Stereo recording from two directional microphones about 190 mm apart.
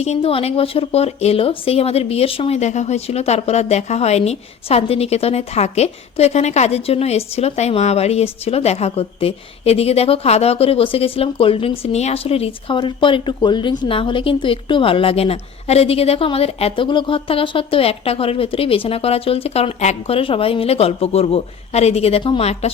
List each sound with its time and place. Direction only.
0.0 s speech: 30° left (ahead or behind)